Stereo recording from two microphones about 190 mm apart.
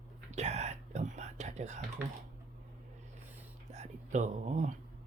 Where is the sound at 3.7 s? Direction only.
40° right (ahead or behind).